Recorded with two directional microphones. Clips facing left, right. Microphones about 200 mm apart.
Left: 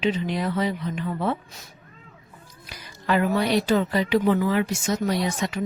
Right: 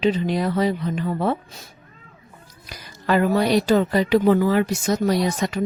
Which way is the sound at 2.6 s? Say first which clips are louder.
Right 3 dB; 40° right (ahead or behind).